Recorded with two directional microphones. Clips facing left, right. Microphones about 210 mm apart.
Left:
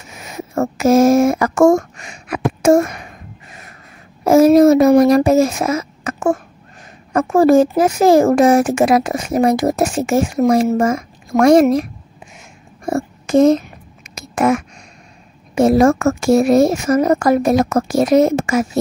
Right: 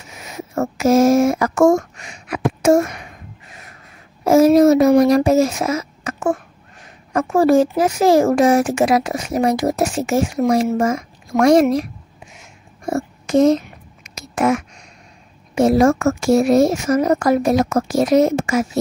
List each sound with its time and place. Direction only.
0.2 s speech: 50° left (ahead or behind)
4.2 s speech: 55° left (ahead or behind)
12.9 s a child's voice: 50° left (ahead or behind)
14.0 s a sound: 55° left (ahead or behind)
15.5 s speech: 55° left (ahead or behind)